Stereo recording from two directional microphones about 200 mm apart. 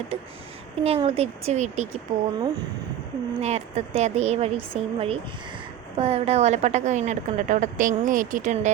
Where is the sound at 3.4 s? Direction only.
35° right (ahead or behind).